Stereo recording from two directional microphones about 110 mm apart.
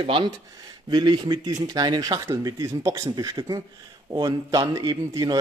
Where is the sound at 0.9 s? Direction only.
40° right (ahead or behind).